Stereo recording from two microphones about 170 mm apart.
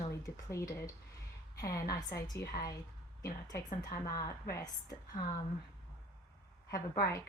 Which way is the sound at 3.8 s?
25° left (ahead or behind).